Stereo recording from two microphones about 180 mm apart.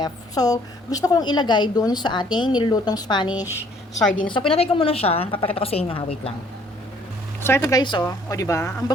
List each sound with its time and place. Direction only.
0.0 s a woman's voice: 20° left (ahead or behind)
7.4 s speech: 15° left (ahead or behind)